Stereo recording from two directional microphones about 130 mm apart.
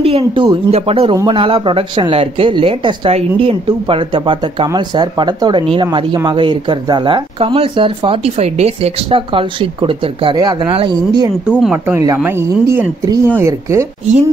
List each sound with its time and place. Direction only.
0.0 s speech: 50° right (ahead or behind)
11.4 s speech: 10° right (ahead or behind)